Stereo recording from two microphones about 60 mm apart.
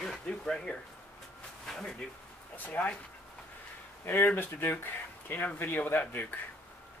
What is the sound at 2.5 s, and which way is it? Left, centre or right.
Speech, left.